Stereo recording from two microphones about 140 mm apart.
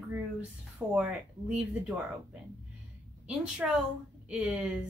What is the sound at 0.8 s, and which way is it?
Speech, 20° right (ahead or behind).